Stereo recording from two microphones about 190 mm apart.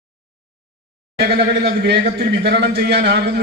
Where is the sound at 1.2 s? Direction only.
60° right (ahead or behind).